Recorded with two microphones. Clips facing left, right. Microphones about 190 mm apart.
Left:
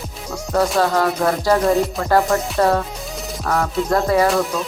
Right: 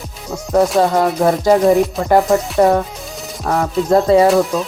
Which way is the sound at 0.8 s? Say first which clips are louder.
Right 4 dB; 20° right (ahead or behind).